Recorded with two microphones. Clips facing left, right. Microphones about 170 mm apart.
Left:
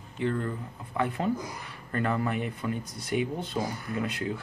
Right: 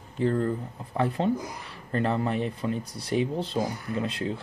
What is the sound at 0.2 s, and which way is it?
Speech, 35° right (ahead or behind).